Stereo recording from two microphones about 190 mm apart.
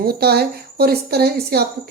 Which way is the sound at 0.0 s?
55° right (ahead or behind).